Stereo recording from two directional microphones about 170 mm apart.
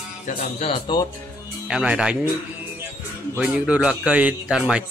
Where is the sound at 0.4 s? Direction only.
35° left (ahead or behind).